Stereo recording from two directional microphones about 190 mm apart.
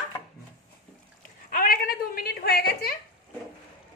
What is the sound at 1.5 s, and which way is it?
A woman's voice, 50° left (ahead or behind).